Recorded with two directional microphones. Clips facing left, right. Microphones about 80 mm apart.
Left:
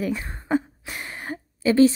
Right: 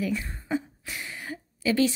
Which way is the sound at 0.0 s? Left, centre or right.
Left.